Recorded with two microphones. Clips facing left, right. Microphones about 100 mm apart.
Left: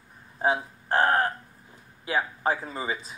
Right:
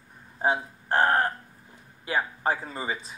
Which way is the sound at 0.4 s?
Centre (ahead or behind).